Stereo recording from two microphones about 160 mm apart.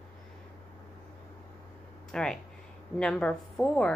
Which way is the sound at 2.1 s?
5° left (ahead or behind).